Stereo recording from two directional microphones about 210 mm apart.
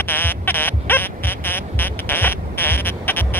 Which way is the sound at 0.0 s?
10° left (ahead or behind).